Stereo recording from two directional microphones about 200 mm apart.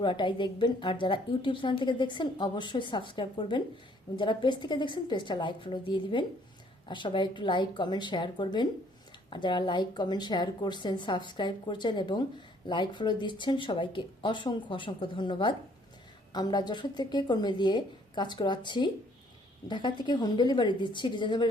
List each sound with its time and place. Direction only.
0.0 s a woman's voice: 25° left (ahead or behind)